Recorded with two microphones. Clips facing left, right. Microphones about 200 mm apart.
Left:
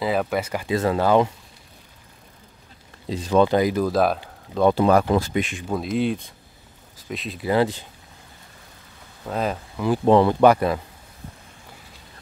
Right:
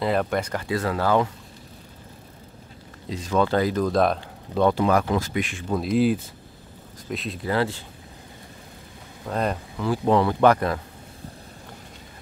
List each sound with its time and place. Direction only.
0.0 s speech: 5° left (ahead or behind)
0.7 s speech: 20° left (ahead or behind)
3.1 s speech: 35° left (ahead or behind)
3.4 s speech: 15° left (ahead or behind)
4.7 s speech: 30° left (ahead or behind)
5.7 s speech: centre (ahead or behind)
7.4 s speech: 15° left (ahead or behind)
9.3 s speech: centre (ahead or behind)
9.8 s speech: 20° left (ahead or behind)
10.4 s speech: 10° left (ahead or behind)